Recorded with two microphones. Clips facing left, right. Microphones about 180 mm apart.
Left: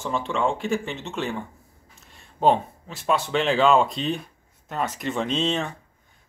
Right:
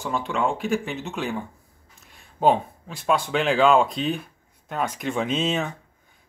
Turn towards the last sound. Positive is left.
turn(degrees=-5)  # may be behind; listen again after turning